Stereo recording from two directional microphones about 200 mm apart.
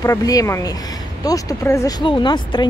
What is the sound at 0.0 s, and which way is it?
Speech, 15° left (ahead or behind).